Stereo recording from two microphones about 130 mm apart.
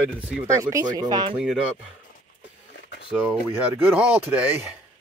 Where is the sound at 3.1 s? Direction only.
5° right (ahead or behind).